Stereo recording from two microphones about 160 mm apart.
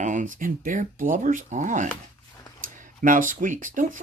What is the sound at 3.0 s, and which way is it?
Speech, 55° right (ahead or behind).